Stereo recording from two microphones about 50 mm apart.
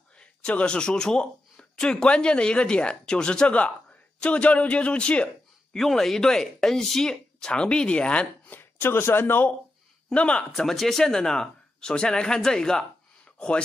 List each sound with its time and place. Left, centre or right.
0.2 s speech: left
5.8 s speech: centre; by 8.3 s left
8.5 s speech: left
10.1 s speech: left
10.5 s speech: centre